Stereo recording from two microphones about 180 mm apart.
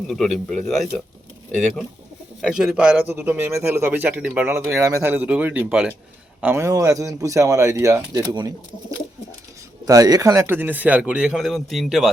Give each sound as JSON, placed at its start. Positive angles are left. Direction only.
{"t": 0.1, "sound": "speech", "side_deg": 0}
{"t": 2.4, "sound": "a man's voice", "side_deg": 0}
{"t": 6.4, "sound": "a man's voice", "side_deg": -15}
{"t": 9.8, "sound": "a man's voice", "side_deg": -20}